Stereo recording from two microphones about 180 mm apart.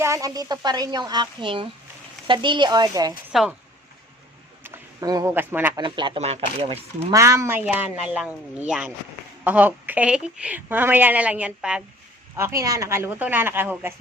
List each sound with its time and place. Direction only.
0.0 s speech: 20° right (ahead or behind)
4.6 s speech: 20° right (ahead or behind)
5.8 s speech: 25° right (ahead or behind)
7.1 s a woman's voice: 15° right (ahead or behind)